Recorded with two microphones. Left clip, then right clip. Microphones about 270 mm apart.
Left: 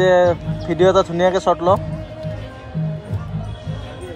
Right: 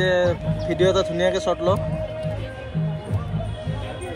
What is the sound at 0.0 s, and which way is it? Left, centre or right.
Speech, left.